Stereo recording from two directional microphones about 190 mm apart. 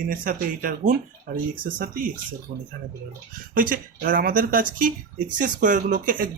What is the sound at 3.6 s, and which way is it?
Speech, 45° right (ahead or behind).